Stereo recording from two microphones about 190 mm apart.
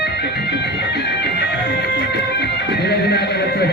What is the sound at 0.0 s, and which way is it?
Music, 60° left (ahead or behind).